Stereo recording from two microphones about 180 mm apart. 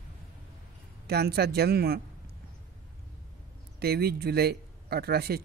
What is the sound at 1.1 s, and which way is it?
Speech, 60° right (ahead or behind).